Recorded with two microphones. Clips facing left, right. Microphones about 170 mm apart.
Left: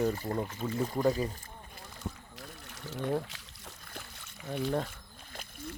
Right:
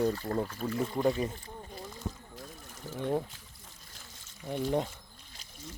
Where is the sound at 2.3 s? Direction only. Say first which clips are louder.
Right 1 dB; 70° left (ahead or behind).